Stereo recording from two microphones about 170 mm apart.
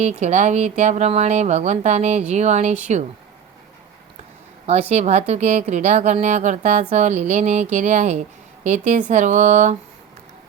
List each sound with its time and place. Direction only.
0.0 s a woman's voice: 40° right (ahead or behind)
4.6 s a woman's voice: 40° right (ahead or behind)